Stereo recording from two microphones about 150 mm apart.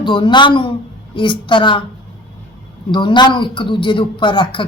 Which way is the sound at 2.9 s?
30° left (ahead or behind).